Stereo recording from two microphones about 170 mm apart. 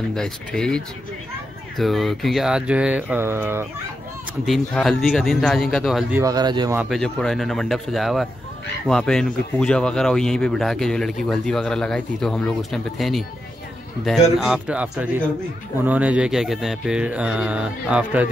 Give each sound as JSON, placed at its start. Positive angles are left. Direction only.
{"t": 0.1, "sound": "speech", "side_deg": 5}
{"t": 4.5, "sound": "speech", "side_deg": 5}
{"t": 6.1, "sound": "speech", "side_deg": -20}
{"t": 6.8, "sound": "speech", "side_deg": 0}
{"t": 14.4, "sound": "speech", "side_deg": -5}